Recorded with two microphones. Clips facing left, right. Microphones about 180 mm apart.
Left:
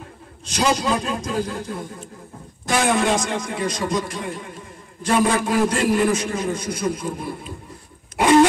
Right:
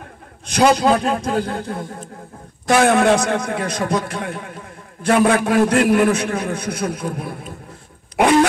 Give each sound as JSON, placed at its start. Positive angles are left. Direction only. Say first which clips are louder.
{"t": 0.5, "sound": "a man's voice", "louder": "right 6 dB", "side_deg": -60}